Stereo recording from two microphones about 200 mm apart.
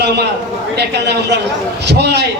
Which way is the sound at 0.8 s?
55° right (ahead or behind).